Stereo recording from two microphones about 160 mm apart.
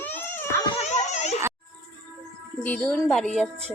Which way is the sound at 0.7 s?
45° left (ahead or behind).